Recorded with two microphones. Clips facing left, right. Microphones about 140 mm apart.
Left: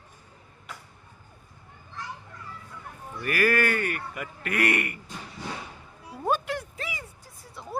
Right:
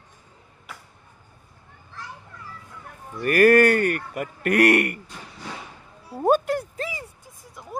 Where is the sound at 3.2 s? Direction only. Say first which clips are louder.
Right 9 dB; 50° right (ahead or behind).